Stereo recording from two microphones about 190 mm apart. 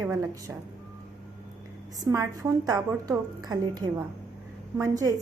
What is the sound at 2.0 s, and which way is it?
A woman's voice, 20° right (ahead or behind).